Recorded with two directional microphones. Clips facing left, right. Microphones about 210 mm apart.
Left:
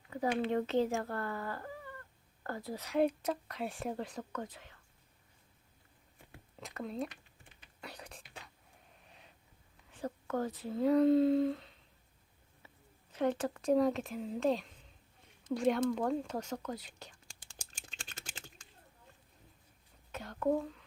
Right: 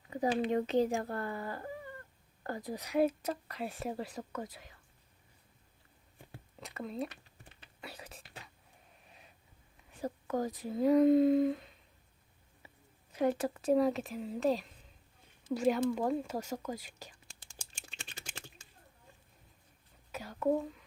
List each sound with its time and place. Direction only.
0.4 s a woman's voice: 15° right (ahead or behind)
6.6 s speech: centre (ahead or behind)
7.8 s whispering: 5° right (ahead or behind)
9.9 s a woman's voice: 10° right (ahead or behind)
12.6 s a sound: 10° right (ahead or behind)
13.1 s speech: 10° right (ahead or behind)
15.4 s whispering: 5° right (ahead or behind)
20.1 s whispering: 5° right (ahead or behind)